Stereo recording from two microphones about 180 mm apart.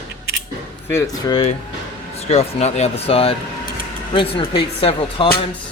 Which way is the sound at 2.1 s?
35° left (ahead or behind).